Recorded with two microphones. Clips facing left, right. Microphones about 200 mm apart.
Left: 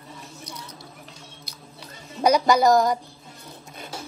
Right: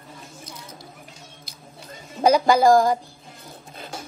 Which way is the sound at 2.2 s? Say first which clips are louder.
Right 2 dB; 50° right (ahead or behind).